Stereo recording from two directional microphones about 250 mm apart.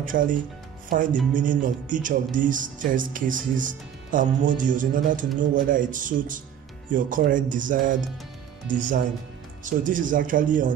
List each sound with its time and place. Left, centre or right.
0.0 s speech: right